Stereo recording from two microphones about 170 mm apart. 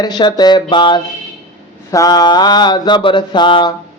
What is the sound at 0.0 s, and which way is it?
Mantra, 25° left (ahead or behind).